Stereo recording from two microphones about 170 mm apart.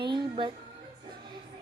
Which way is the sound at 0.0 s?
30° right (ahead or behind).